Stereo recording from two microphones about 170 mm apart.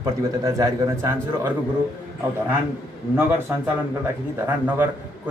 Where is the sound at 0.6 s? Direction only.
15° right (ahead or behind).